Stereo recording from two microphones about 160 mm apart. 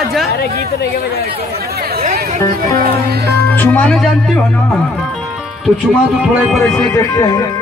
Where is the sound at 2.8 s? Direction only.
70° right (ahead or behind).